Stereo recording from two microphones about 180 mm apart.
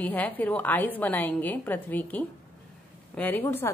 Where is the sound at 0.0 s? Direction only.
10° left (ahead or behind).